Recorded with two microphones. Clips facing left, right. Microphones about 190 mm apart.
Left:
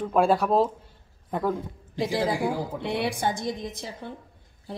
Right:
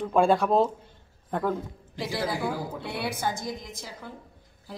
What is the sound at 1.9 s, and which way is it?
Speech, 20° left (ahead or behind).